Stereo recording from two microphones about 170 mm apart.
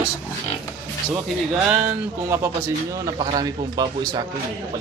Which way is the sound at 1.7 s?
10° right (ahead or behind).